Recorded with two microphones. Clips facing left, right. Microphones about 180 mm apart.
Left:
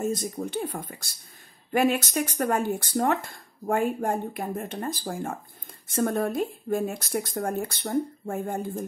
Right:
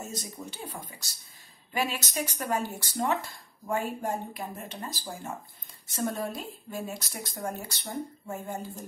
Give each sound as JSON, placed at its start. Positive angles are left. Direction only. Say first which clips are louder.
{"t": 0.0, "sound": "speech", "louder": "left 10 dB", "side_deg": 55}